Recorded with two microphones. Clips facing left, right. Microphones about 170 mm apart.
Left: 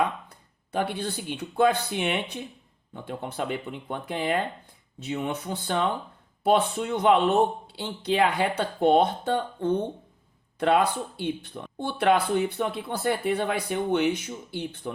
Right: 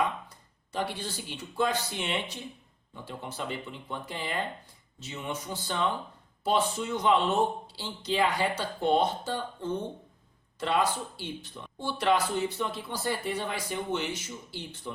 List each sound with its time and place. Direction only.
0.0 s speech: 60° left (ahead or behind)